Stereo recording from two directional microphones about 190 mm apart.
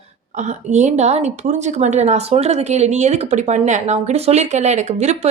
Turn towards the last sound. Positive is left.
turn(degrees=-35)  # may be behind; listen again after turning